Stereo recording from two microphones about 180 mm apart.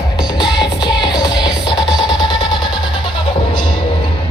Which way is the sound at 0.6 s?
25° left (ahead or behind).